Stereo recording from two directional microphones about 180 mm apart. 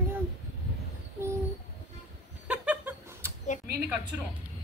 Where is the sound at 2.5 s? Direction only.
5° right (ahead or behind).